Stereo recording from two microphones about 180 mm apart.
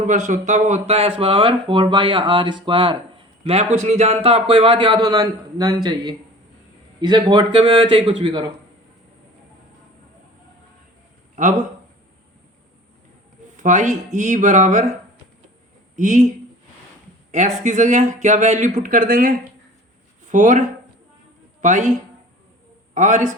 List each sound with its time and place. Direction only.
0.0 s speech: 40° right (ahead or behind); by 8.4 s 25° right (ahead or behind)
11.3 s speech: 45° right (ahead or behind)
13.6 s speech: 40° right (ahead or behind)
16.0 s speech: 40° right (ahead or behind)
17.3 s speech: 40° right (ahead or behind)
23.0 s speech: 40° right (ahead or behind)